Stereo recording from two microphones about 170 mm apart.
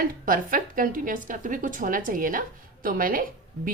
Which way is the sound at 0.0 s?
55° right (ahead or behind).